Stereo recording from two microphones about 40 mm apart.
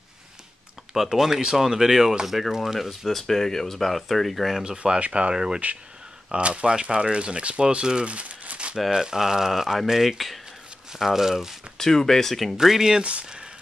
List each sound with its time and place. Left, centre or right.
1.0 s speech: centre
3.2 s speech: centre
4.6 s speech: right
5.3 s speech: centre
6.3 s speech: right
8.9 s speech: centre
11.8 s speech: centre
12.5 s speech: centre
13.0 s speech: right